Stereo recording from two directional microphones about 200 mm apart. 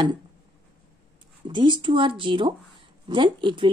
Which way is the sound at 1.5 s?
25° right (ahead or behind).